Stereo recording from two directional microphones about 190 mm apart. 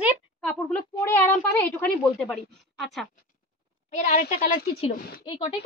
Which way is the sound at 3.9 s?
40° left (ahead or behind).